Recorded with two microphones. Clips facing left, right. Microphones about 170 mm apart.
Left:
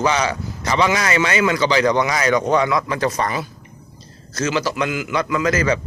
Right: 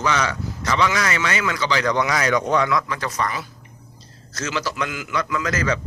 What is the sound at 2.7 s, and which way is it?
Speech, 25° left (ahead or behind).